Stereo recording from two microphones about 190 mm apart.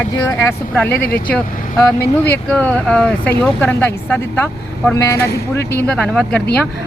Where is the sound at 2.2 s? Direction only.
10° left (ahead or behind).